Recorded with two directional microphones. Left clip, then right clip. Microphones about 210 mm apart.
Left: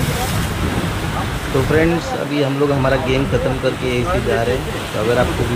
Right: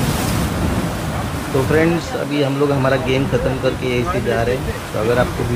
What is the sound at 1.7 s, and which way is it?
Speech, centre (ahead or behind).